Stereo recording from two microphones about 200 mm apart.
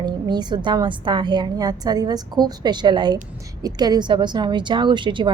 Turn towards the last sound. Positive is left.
turn(degrees=-25)  # may be behind; listen again after turning